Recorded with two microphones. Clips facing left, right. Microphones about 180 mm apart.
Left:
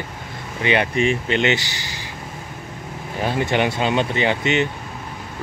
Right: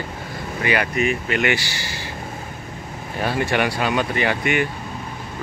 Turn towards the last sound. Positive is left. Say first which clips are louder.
# left 1 dB
turn(degrees=25)  # may be behind; listen again after turning